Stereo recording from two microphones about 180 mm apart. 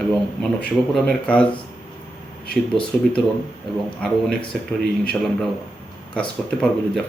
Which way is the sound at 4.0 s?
5° left (ahead or behind).